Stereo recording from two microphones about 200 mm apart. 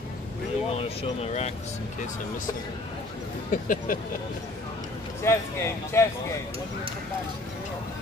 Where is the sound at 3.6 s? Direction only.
45° left (ahead or behind).